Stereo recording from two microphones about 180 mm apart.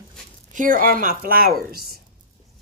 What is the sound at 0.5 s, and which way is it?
Speech, 50° right (ahead or behind).